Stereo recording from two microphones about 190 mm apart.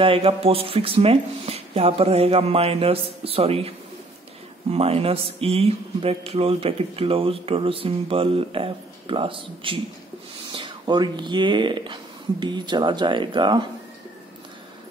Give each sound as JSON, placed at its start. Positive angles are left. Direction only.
{"t": 0.0, "sound": "speech", "side_deg": -30}